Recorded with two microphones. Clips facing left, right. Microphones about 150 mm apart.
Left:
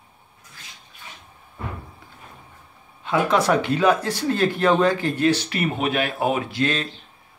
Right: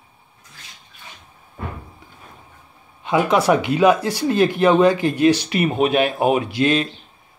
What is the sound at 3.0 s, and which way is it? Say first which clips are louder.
Speech: right 3 dB; 15° right (ahead or behind).